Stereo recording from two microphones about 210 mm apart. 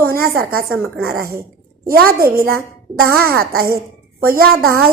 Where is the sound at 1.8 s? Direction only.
45° right (ahead or behind).